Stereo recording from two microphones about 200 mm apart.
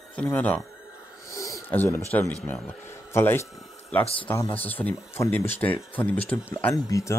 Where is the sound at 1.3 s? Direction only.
15° left (ahead or behind).